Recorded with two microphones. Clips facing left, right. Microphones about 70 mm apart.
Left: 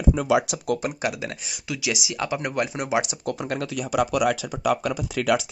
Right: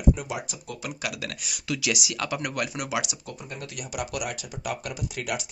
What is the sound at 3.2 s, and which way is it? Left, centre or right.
Speech, left.